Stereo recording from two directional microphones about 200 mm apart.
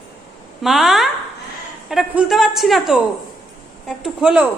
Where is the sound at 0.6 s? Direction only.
Centre (ahead or behind).